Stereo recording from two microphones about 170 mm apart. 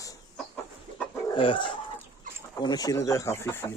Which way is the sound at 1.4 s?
30° left (ahead or behind).